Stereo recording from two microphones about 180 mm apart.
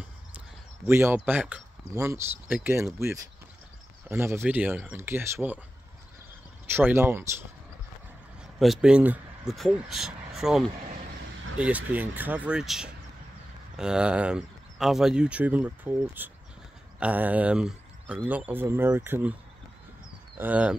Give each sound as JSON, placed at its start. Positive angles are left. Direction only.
{"t": 0.8, "sound": "speech", "side_deg": -10}
{"t": 6.7, "sound": "speech", "side_deg": -10}
{"t": 8.5, "sound": "speech", "side_deg": -5}
{"t": 20.3, "sound": "speech", "side_deg": -10}